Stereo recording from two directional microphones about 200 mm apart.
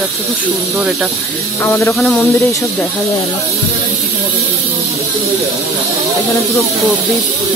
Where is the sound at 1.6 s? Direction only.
10° left (ahead or behind).